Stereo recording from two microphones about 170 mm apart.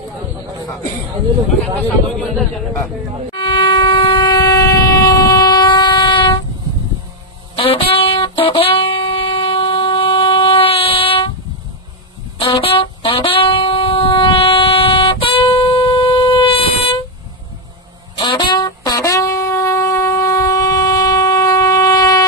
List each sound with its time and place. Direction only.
2.1 s a man's voice: centre (ahead or behind)
3.3 s train: 30° left (ahead or behind)
7.5 s music: 35° left (ahead or behind)
12.4 s music: 30° left (ahead or behind)
18.2 s shofar: 30° left (ahead or behind)